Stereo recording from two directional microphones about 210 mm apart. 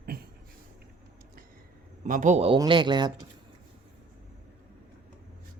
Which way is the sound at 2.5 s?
20° right (ahead or behind).